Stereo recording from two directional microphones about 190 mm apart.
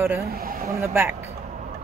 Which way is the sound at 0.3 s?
50° right (ahead or behind).